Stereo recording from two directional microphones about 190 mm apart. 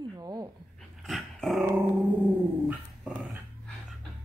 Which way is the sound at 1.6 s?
10° right (ahead or behind).